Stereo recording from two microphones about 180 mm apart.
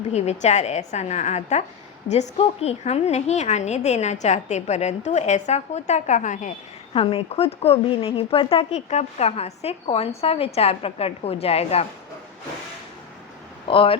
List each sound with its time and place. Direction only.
0.1 s speech: 40° left (ahead or behind)
6.9 s speech: 30° left (ahead or behind)
13.7 s speech: 30° left (ahead or behind)